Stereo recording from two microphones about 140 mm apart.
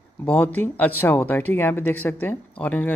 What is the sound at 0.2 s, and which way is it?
Speech, 10° left (ahead or behind).